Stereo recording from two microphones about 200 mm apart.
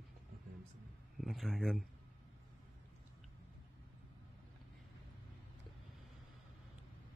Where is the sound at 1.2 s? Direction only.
Centre (ahead or behind).